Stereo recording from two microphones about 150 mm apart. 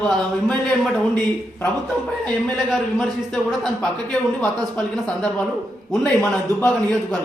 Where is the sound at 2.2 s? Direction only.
Centre (ahead or behind).